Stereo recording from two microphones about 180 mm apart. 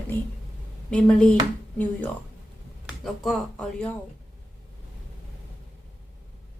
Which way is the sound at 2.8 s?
Centre (ahead or behind).